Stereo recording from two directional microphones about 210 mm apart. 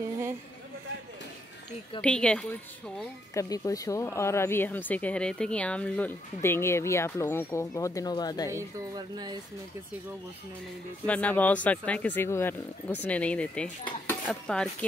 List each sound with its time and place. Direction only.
2.0 s a woman's voice: 5° left (ahead or behind)
3.0 s speech: 15° left (ahead or behind)
8.5 s speech: 15° right (ahead or behind)
11.1 s speech: 5° left (ahead or behind)